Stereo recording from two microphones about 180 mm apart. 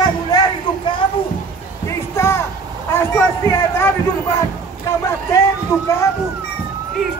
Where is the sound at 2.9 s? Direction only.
10° left (ahead or behind).